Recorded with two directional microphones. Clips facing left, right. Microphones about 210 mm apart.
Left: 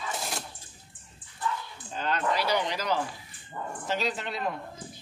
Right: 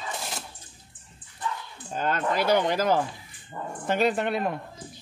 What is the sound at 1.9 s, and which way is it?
Speech, 50° right (ahead or behind).